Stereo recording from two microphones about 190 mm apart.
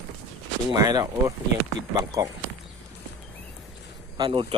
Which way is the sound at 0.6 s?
20° right (ahead or behind).